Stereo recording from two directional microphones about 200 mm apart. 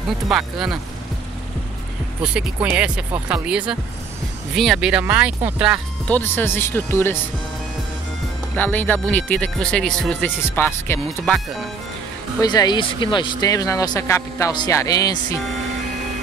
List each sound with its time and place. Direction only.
0.3 s speech: centre (ahead or behind)
2.2 s speech: 5° right (ahead or behind)
6.0 s speech: 10° left (ahead or behind)
8.5 s speech: 10° left (ahead or behind)
12.4 s speech: 20° left (ahead or behind)